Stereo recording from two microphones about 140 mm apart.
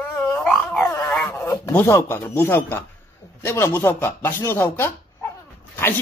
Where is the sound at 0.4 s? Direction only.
5° left (ahead or behind).